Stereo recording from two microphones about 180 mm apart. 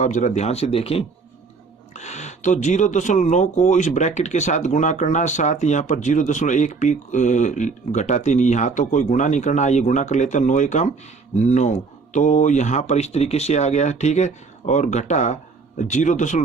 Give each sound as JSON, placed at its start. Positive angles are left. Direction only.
{"t": 0.0, "sound": "speech", "side_deg": 45}